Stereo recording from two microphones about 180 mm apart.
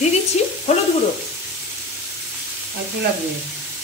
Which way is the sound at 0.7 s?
40° left (ahead or behind).